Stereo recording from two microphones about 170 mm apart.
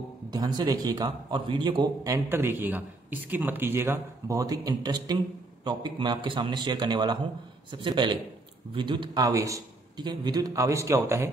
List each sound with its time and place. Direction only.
0.3 s a man's voice: 25° right (ahead or behind)